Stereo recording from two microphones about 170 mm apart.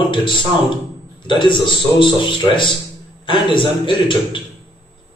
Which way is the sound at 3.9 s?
30° left (ahead or behind).